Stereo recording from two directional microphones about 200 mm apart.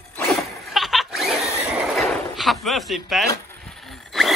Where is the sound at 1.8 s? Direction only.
Centre (ahead or behind).